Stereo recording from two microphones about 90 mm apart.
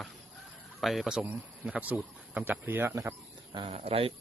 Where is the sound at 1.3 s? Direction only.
15° right (ahead or behind); by 3.1 s 35° right (ahead or behind).